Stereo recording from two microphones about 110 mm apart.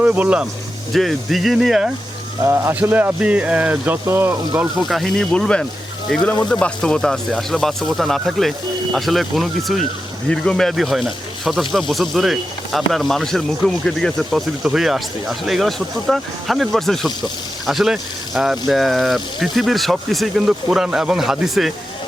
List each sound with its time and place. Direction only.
0.0 s speech: 15° right (ahead or behind)
0.9 s speech: centre (ahead or behind)
2.4 s speech: 25° right (ahead or behind)
4.8 s speech: centre (ahead or behind)